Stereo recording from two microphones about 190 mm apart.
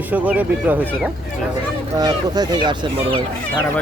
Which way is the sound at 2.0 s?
20° right (ahead or behind).